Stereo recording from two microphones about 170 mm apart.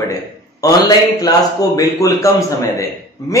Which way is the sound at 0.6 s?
20° left (ahead or behind).